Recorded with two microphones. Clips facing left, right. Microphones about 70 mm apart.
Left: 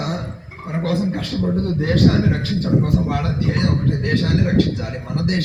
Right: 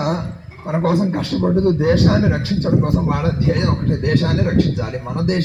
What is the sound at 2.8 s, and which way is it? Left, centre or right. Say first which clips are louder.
A man's voice: right 2 dB; right.